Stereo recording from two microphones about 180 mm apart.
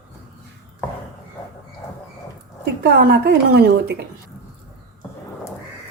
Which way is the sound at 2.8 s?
60° right (ahead or behind).